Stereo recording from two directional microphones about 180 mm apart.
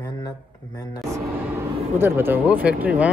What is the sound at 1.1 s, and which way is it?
Speech, 15° right (ahead or behind).